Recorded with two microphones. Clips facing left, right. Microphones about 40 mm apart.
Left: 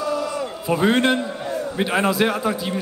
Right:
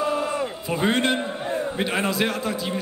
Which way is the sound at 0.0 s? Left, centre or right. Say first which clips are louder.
Even; right.